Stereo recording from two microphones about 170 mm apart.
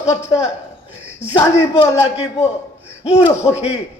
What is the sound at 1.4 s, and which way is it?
Speech, 15° left (ahead or behind).